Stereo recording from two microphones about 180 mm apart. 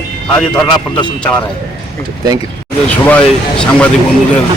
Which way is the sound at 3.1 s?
5° left (ahead or behind).